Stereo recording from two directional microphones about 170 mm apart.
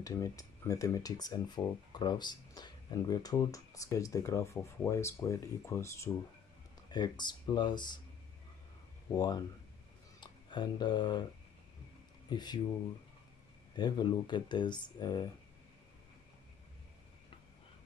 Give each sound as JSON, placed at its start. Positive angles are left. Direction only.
{"t": 0.0, "sound": "speech", "side_deg": 20}
{"t": 9.1, "sound": "speech", "side_deg": 25}
{"t": 12.3, "sound": "speech", "side_deg": 25}
{"t": 13.7, "sound": "speech", "side_deg": 25}